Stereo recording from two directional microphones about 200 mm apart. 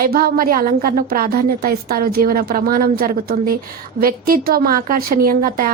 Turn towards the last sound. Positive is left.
turn(degrees=-45)  # may be behind; listen again after turning